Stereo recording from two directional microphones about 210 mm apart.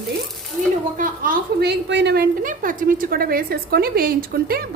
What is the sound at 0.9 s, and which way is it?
A woman's voice, 40° right (ahead or behind).